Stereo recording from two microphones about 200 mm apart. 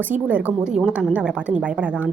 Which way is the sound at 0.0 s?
10° right (ahead or behind).